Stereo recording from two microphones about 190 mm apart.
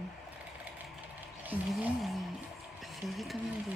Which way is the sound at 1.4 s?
5° right (ahead or behind).